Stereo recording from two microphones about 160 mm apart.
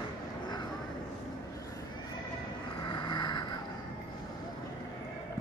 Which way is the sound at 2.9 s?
30° left (ahead or behind).